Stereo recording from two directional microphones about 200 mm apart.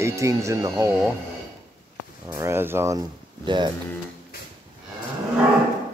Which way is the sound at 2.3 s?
15° right (ahead or behind).